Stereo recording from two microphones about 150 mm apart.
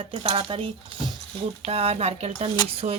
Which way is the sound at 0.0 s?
35° right (ahead or behind).